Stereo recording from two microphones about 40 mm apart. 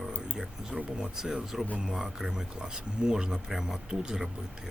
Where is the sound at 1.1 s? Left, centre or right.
Centre.